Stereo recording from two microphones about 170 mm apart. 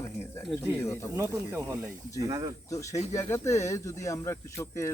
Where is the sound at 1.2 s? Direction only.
15° right (ahead or behind).